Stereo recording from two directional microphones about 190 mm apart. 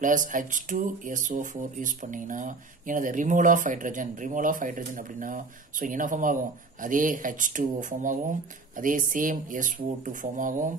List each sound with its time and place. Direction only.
0.0 s speech: 45° right (ahead or behind)